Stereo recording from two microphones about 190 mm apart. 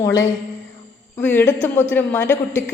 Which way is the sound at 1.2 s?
10° left (ahead or behind).